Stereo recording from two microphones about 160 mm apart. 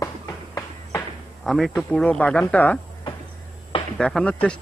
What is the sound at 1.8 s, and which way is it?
Speech, 5° left (ahead or behind).